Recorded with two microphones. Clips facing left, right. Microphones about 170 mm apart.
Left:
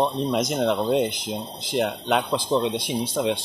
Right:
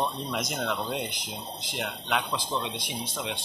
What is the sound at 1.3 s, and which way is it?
Speech, 40° left (ahead or behind).